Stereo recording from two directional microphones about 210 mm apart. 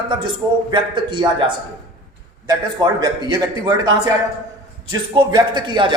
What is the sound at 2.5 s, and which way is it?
A man's voice, 20° right (ahead or behind).